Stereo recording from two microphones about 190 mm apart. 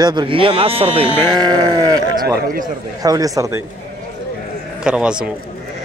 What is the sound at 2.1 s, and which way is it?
Speech, 50° right (ahead or behind).